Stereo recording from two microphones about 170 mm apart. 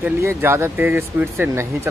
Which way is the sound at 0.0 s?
15° right (ahead or behind).